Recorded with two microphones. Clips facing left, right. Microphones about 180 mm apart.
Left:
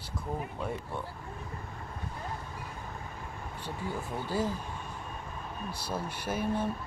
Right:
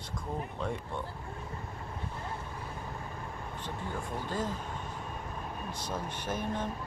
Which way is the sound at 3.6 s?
10° left (ahead or behind).